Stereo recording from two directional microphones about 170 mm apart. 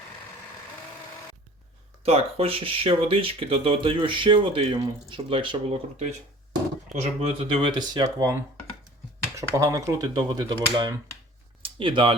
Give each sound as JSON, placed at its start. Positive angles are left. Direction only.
{"t": 2.0, "sound": "speech", "side_deg": -35}
{"t": 9.4, "sound": "speech", "side_deg": -20}